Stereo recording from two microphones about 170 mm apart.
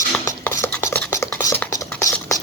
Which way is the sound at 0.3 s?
15° left (ahead or behind).